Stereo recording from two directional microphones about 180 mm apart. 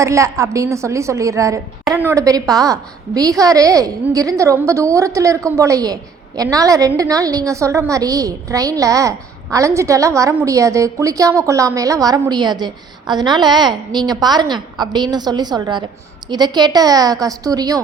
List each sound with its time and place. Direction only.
0.0 s a woman's voice: 15° right (ahead or behind)